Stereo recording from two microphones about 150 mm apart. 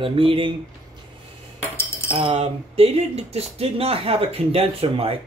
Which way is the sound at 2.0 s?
40° right (ahead or behind).